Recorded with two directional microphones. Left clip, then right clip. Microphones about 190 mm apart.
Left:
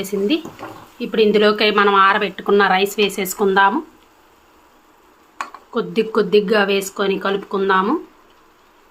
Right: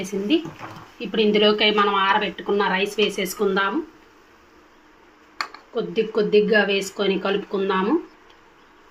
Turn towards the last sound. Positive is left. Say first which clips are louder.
# left 5 dB
turn(degrees=20)  # may be behind; listen again after turning